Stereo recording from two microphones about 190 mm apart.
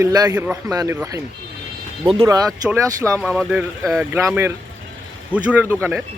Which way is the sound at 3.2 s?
5° right (ahead or behind).